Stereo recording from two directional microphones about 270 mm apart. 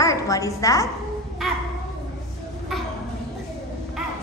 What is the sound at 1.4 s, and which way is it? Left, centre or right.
Speech, centre.